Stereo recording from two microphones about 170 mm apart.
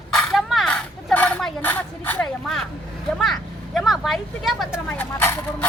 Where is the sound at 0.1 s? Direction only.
Centre (ahead or behind).